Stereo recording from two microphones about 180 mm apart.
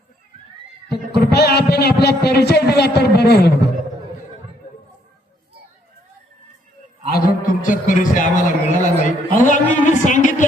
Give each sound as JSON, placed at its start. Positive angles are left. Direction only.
{"t": 0.9, "sound": "speech", "side_deg": 65}
{"t": 7.1, "sound": "a man's voice", "side_deg": 45}